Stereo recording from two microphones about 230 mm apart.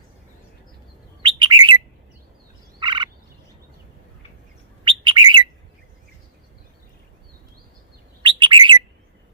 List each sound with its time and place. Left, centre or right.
1.2 s bird: centre
2.8 s frog: centre
4.9 s bird: right
8.2 s bird: right